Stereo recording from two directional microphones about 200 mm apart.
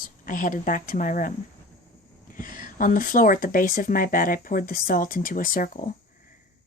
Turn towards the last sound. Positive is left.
turn(degrees=45)  # may be behind; listen again after turning